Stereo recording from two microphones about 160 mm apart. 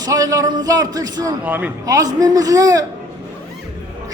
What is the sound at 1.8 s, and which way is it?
A man's voice, 20° right (ahead or behind).